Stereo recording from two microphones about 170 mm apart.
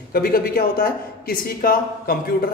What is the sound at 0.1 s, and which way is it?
Speech, 60° left (ahead or behind).